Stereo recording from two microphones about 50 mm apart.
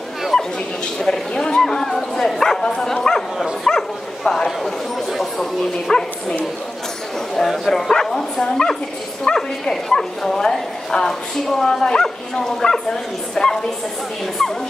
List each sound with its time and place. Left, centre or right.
1.0 s speech: centre
2.6 s speech: centre
2.9 s speech: centre
7.3 s a woman's voice: centre